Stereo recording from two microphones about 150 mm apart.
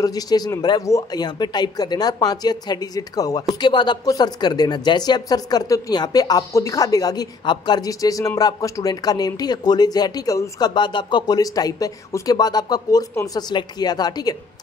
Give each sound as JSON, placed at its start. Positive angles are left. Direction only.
{"t": 0.0, "sound": "speech", "side_deg": 25}